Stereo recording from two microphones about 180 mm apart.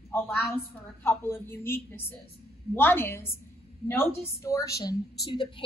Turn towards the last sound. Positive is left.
turn(degrees=25)  # may be behind; listen again after turning